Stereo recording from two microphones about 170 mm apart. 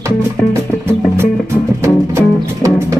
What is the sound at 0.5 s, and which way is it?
Music, 15° right (ahead or behind).